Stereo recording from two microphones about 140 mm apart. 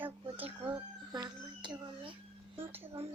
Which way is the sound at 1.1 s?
30° right (ahead or behind).